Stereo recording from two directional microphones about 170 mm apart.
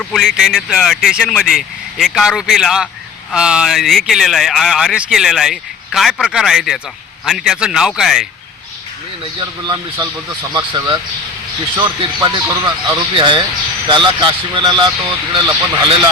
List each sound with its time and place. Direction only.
0.0 s speech: centre (ahead or behind)
10.5 s speech: 25° right (ahead or behind)